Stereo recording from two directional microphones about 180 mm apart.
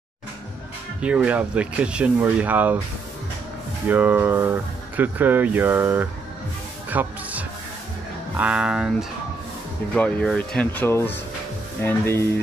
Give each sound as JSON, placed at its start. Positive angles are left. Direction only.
{"t": 1.0, "sound": "speech", "side_deg": -5}
{"t": 3.9, "sound": "speech", "side_deg": -10}
{"t": 9.9, "sound": "speech", "side_deg": 5}